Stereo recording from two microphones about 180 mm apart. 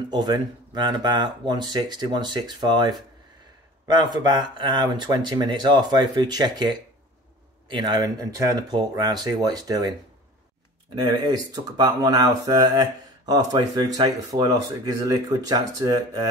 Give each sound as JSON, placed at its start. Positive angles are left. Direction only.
{"t": 0.1, "sound": "speech", "side_deg": -25}
{"t": 11.0, "sound": "speech", "side_deg": -20}